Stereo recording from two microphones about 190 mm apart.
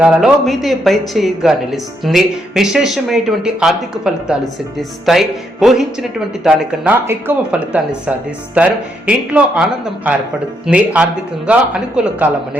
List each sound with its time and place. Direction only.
0.0 s speech: 5° right (ahead or behind)